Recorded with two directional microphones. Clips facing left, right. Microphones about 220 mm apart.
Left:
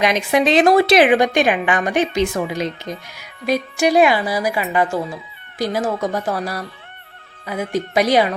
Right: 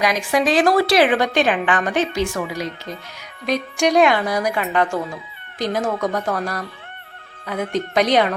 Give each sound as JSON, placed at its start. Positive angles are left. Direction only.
{"t": 0.0, "sound": "a woman's voice", "side_deg": 20}
{"t": 3.2, "sound": "a woman's voice", "side_deg": 5}